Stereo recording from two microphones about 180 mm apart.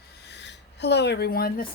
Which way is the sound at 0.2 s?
75° left (ahead or behind).